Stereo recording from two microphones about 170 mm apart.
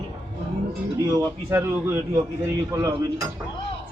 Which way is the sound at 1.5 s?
15° right (ahead or behind).